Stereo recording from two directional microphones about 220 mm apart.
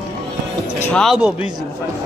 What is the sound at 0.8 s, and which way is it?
Speech, centre (ahead or behind).